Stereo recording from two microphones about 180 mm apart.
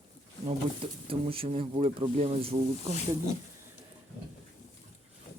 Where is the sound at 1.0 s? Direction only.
30° right (ahead or behind).